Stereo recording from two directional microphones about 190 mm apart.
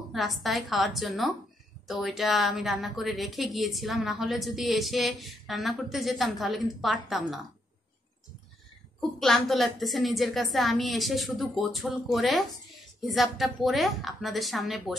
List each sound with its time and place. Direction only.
0.1 s a woman's voice: centre (ahead or behind)
9.2 s a woman's voice: centre (ahead or behind)